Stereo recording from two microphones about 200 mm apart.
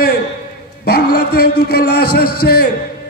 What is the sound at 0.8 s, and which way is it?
A man's voice, 50° left (ahead or behind).